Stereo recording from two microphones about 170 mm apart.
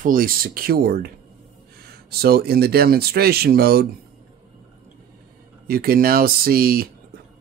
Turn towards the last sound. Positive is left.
turn(degrees=-60)  # may be behind; listen again after turning